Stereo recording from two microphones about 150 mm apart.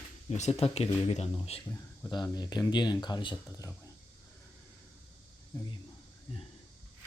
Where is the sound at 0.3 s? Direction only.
50° left (ahead or behind).